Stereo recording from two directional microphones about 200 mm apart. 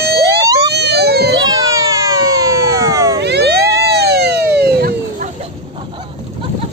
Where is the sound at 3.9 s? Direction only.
55° right (ahead or behind).